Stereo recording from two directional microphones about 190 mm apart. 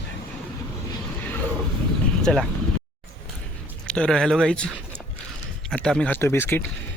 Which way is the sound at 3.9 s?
5° left (ahead or behind).